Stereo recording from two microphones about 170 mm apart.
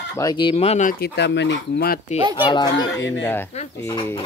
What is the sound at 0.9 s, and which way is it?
Speech, 75° left (ahead or behind).